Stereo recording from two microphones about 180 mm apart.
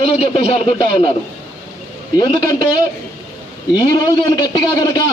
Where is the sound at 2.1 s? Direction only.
25° left (ahead or behind).